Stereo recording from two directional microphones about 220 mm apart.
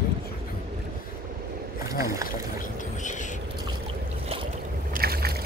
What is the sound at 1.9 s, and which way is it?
Speech, 15° right (ahead or behind).